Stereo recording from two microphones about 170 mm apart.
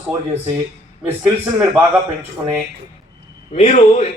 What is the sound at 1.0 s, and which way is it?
Speech, 10° right (ahead or behind).